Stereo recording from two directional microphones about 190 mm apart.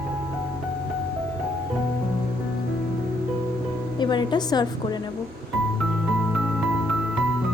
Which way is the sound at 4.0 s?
25° left (ahead or behind).